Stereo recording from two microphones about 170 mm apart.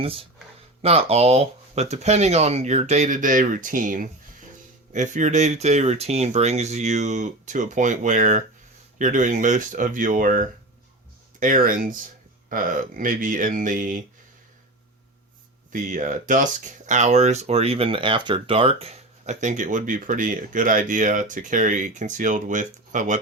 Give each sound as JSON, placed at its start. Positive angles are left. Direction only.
{"t": 0.8, "sound": "speech", "side_deg": -35}
{"t": 13.0, "sound": "speech", "side_deg": -50}
{"t": 15.7, "sound": "speech", "side_deg": -50}